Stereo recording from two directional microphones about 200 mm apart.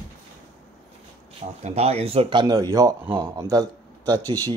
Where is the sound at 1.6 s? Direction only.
30° right (ahead or behind).